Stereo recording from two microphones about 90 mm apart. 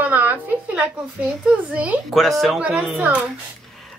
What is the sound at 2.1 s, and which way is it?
Speech, centre (ahead or behind).